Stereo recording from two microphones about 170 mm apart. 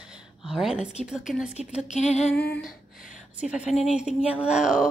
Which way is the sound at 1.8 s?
45° left (ahead or behind).